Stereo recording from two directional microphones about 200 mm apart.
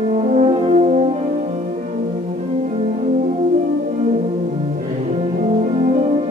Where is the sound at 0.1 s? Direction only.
35° right (ahead or behind).